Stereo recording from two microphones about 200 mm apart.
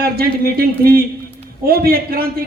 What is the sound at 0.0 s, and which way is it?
A man's voice, 50° right (ahead or behind).